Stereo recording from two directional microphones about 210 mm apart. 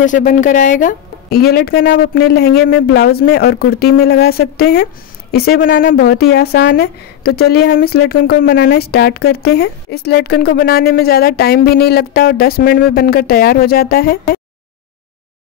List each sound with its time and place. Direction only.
0.0 s a woman's voice: 35° left (ahead or behind)